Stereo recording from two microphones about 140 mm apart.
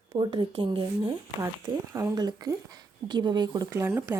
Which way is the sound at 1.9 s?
25° right (ahead or behind).